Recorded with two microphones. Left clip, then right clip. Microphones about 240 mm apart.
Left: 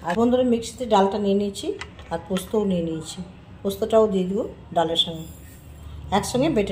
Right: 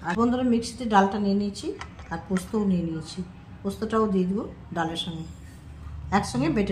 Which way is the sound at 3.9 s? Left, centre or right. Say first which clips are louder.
Left 6 dB; right.